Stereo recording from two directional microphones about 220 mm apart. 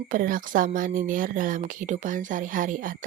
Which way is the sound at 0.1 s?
40° right (ahead or behind).